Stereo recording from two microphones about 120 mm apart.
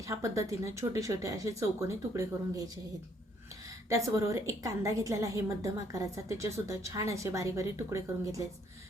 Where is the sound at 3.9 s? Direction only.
30° right (ahead or behind).